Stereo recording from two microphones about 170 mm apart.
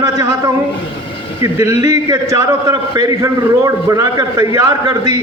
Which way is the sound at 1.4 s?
20° right (ahead or behind).